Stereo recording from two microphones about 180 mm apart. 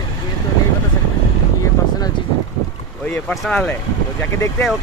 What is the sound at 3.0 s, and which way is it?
Speech, 5° left (ahead or behind).